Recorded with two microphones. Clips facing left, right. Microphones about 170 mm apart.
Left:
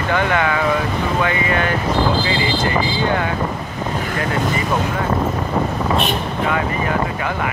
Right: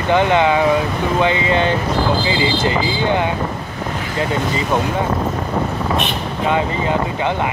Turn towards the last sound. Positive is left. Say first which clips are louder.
# right 2 dB
turn(degrees=-20)  # may be behind; listen again after turning